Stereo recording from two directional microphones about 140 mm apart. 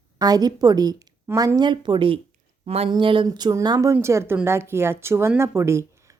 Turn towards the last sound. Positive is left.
turn(degrees=-20)  # may be behind; listen again after turning